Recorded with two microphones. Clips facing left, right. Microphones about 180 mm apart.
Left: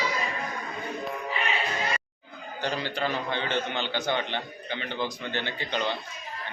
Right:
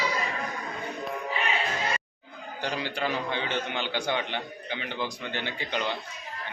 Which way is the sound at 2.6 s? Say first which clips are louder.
Left 1 dB; 10° right (ahead or behind).